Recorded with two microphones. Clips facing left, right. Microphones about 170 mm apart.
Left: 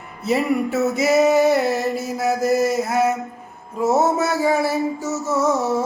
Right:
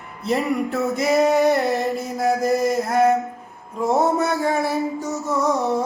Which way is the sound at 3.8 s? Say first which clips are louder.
Left 1 dB; 5° left (ahead or behind).